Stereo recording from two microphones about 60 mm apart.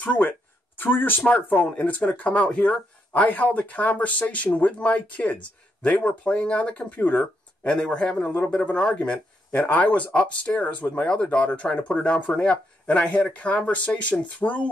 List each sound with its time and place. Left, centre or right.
0.0 s speech: left
0.7 s speech: left